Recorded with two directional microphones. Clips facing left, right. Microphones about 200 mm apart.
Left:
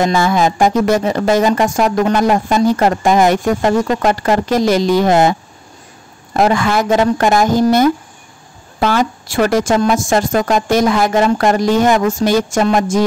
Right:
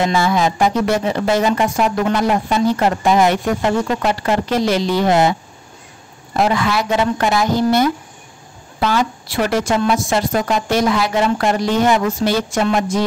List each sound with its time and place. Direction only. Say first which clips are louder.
0.0 s speech: left 3 dB; 45° left (ahead or behind)
6.3 s speech: left 3 dB; 50° left (ahead or behind)